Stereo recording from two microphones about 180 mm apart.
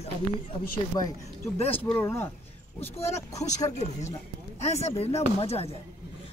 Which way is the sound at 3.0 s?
40° left (ahead or behind).